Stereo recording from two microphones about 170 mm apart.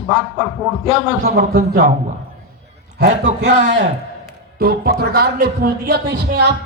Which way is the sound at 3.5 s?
45° right (ahead or behind).